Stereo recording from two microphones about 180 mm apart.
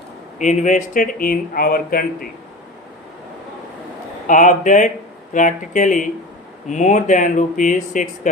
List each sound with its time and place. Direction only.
0.3 s speech: 45° left (ahead or behind)
4.3 s speech: 45° left (ahead or behind)